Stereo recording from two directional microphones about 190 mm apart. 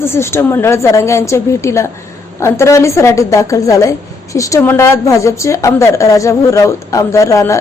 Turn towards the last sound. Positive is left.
turn(degrees=15)  # may be behind; listen again after turning